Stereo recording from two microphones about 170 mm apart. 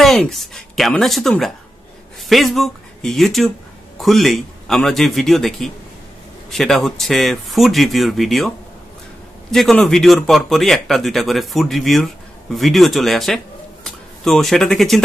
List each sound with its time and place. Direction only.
0.0 s speech: centre (ahead or behind)